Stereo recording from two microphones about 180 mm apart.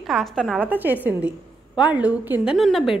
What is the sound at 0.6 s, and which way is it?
A woman's voice, 10° right (ahead or behind).